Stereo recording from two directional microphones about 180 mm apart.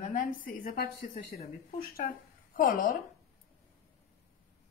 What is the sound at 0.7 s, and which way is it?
A woman's voice, 50° left (ahead or behind).